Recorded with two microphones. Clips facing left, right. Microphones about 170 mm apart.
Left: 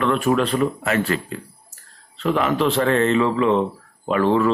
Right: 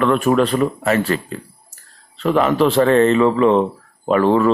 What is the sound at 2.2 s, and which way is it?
Speech, 40° right (ahead or behind).